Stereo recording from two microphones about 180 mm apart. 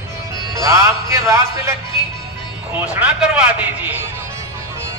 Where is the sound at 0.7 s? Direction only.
15° right (ahead or behind).